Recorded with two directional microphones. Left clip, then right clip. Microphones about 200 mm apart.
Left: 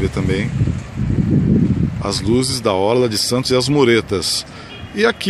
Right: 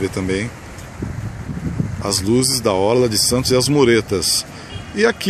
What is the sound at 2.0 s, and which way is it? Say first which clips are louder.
Speech: right 1 dB; centre (ahead or behind).